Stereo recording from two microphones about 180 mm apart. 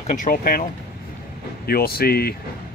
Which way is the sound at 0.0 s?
45° left (ahead or behind).